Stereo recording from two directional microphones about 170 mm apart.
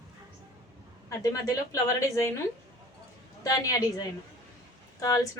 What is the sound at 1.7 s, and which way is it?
Speech, 15° left (ahead or behind).